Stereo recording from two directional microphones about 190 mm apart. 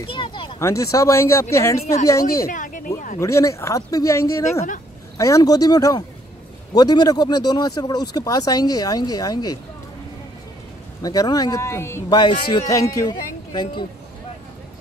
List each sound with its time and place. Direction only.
0.0 s a sound: 25° left (ahead or behind)
0.7 s speech: 15° left (ahead or behind)
2.4 s speech: 45° left (ahead or behind)
3.2 s speech: 15° left (ahead or behind)
11.0 s speech: 20° left (ahead or behind)